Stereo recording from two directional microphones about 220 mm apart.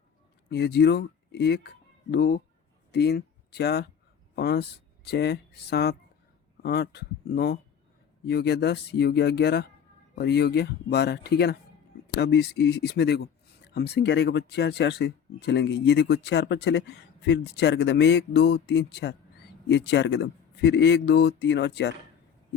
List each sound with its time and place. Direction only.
0.5 s speech: 50° left (ahead or behind)